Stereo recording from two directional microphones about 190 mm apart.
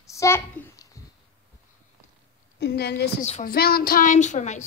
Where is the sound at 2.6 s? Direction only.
60° left (ahead or behind); by 4.6 s 40° left (ahead or behind).